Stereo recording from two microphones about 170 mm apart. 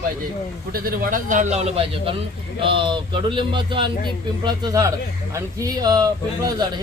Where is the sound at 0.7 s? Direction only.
60° right (ahead or behind).